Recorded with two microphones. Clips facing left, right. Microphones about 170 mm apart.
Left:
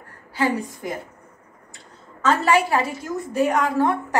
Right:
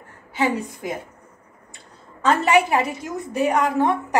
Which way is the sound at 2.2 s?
20° right (ahead or behind).